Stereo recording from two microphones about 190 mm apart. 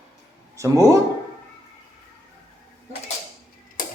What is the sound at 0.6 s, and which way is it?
Speech, 15° right (ahead or behind).